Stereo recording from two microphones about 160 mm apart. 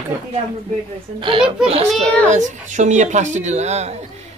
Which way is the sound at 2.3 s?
50° right (ahead or behind).